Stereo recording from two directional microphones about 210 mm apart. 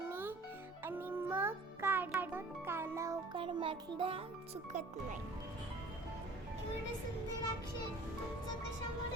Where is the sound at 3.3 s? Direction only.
25° right (ahead or behind).